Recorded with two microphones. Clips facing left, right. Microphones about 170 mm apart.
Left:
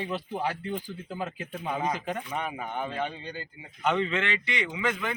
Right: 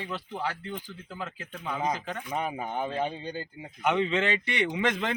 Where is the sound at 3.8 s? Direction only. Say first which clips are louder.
Right 1 dB; 15° right (ahead or behind).